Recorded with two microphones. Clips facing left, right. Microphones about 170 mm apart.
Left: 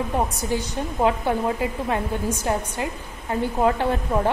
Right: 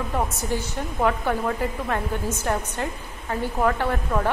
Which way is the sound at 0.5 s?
15° left (ahead or behind).